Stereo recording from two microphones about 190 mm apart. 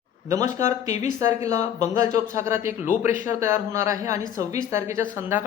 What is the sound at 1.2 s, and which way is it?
Speech, 15° right (ahead or behind).